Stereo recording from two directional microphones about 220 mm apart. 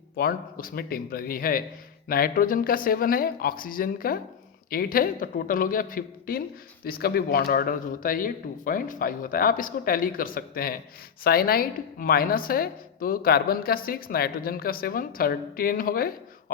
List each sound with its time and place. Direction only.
0.2 s a woman's voice: 40° left (ahead or behind)